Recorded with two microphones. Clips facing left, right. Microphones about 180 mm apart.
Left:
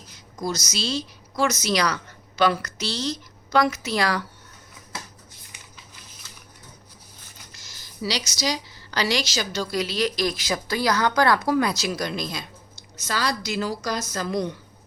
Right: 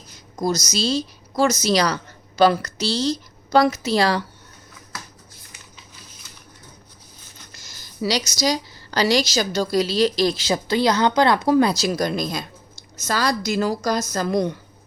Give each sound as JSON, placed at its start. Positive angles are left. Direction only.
{"t": 0.3, "sound": "a woman's voice", "side_deg": -40}
{"t": 4.9, "sound": "finger snapping", "side_deg": 25}
{"t": 7.5, "sound": "a woman's voice", "side_deg": -45}